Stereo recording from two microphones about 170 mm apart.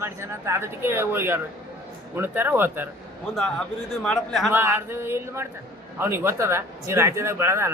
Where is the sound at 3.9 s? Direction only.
Centre (ahead or behind).